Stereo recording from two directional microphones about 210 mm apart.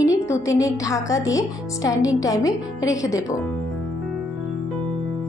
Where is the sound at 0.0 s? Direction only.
15° left (ahead or behind).